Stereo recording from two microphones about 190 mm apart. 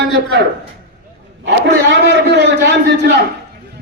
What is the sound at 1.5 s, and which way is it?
A man's voice, 65° right (ahead or behind).